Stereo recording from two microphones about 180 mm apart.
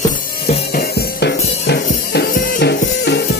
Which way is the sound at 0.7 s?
65° left (ahead or behind).